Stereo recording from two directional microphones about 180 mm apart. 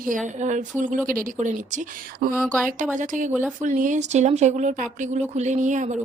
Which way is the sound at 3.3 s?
10° right (ahead or behind).